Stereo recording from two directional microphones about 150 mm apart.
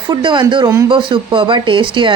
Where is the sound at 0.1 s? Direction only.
30° right (ahead or behind).